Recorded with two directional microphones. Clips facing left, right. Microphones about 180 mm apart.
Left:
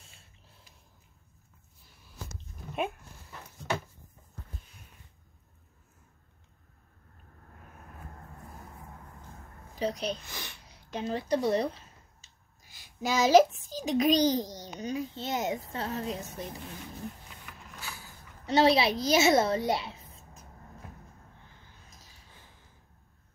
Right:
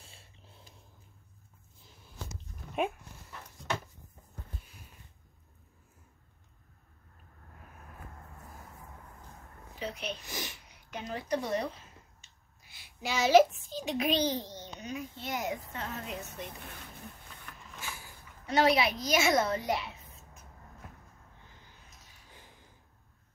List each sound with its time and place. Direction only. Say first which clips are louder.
0.0 s snort: right 3 dB; 30° right (ahead or behind)
2.7 s dog: right 1 dB; 5° left (ahead or behind)
9.8 s speech: left 7 dB; 40° left (ahead or behind)
10.2 s a child's voice: right 3 dB; 15° right (ahead or behind)
10.7 s a woman's voice: left 8 dB; 30° left (ahead or behind)
12.6 s a child's voice: left 5 dB; 45° left (ahead or behind)
17.7 s a child's voice: right 1 dB; 40° left (ahead or behind)